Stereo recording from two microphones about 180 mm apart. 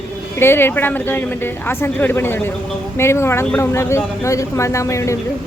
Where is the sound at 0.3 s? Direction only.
10° left (ahead or behind).